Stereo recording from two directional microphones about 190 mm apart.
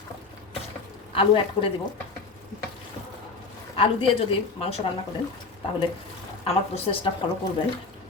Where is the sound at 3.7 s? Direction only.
30° left (ahead or behind).